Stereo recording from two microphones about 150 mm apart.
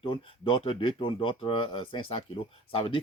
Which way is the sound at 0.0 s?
35° left (ahead or behind).